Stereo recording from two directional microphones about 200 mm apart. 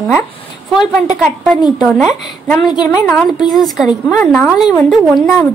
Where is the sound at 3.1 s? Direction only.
5° left (ahead or behind).